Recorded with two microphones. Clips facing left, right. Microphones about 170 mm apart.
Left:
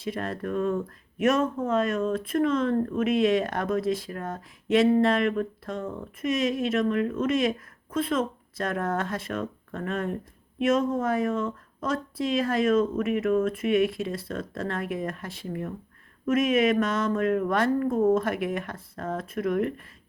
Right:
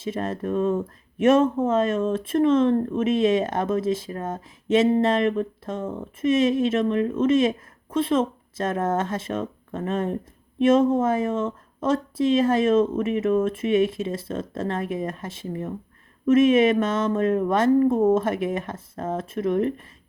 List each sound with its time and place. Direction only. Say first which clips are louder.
0.0 s speech: right 3 dB; 25° right (ahead or behind)